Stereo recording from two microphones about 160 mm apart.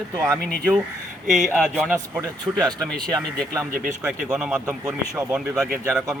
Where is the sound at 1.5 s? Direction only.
15° right (ahead or behind).